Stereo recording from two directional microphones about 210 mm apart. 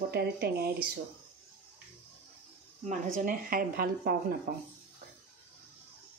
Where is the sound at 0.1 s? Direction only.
50° right (ahead or behind).